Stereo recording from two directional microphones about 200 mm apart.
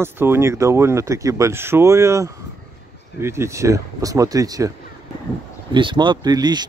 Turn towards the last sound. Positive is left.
turn(degrees=-20)  # may be behind; listen again after turning